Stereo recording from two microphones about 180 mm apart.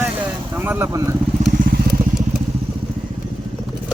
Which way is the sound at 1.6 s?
60° right (ahead or behind).